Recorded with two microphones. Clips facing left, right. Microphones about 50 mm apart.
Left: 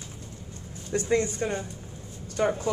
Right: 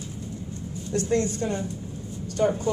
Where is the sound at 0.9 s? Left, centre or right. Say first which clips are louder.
Right 1 dB; left.